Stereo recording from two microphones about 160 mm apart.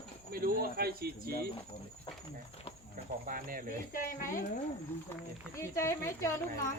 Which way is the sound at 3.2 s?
60° right (ahead or behind).